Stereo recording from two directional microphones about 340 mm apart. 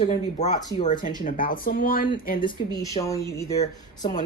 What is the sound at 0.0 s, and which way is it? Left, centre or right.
Speech, centre.